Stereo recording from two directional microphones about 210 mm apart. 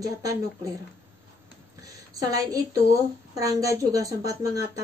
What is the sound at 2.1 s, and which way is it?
A woman's voice, 15° right (ahead or behind).